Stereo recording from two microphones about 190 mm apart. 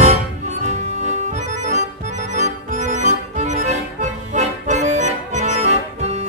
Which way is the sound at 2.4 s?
40° right (ahead or behind).